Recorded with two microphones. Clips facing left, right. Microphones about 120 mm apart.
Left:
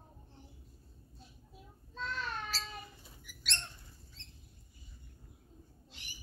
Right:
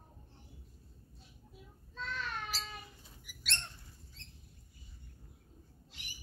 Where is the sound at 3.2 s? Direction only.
5° right (ahead or behind).